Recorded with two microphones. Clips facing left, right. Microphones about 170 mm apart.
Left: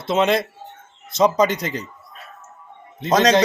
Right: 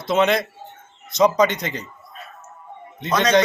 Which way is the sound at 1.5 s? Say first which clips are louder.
Left 2 dB; 35° left (ahead or behind).